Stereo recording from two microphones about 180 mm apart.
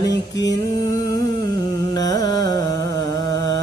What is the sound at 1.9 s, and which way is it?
Carnatic music, 20° left (ahead or behind).